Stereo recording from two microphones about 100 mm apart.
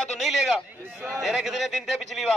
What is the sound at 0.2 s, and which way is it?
A man's voice, centre (ahead or behind).